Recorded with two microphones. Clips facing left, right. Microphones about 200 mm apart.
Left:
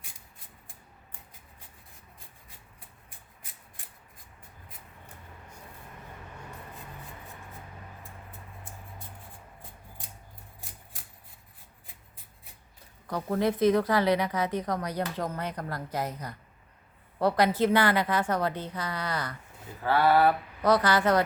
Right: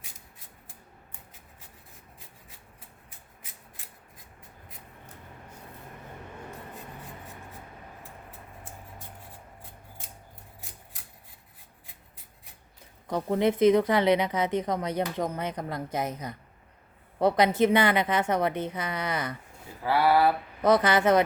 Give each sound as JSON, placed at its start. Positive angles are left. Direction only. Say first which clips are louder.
{"t": 13.1, "sound": "a woman's voice", "louder": "right 3 dB", "side_deg": -20}
{"t": 20.6, "sound": "a woman's voice", "louder": "right 3 dB", "side_deg": -20}